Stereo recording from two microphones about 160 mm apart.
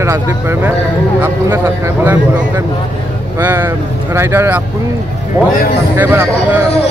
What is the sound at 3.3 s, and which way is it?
Speech, 15° right (ahead or behind).